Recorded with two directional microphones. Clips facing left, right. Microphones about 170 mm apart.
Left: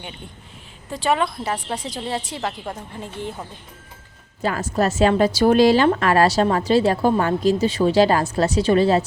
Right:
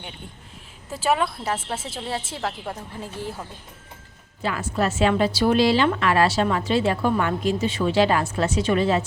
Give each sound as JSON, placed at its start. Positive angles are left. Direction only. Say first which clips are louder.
{"t": 0.9, "sound": "a woman's voice", "louder": "left 2 dB", "side_deg": -5}
{"t": 4.4, "sound": "a woman's voice", "louder": "left 3 dB", "side_deg": 40}